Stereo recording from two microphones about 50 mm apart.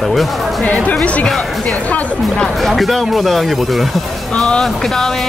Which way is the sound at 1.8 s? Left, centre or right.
Left.